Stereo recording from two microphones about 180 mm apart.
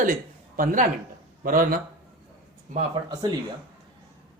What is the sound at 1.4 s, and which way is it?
Speech, 50° right (ahead or behind).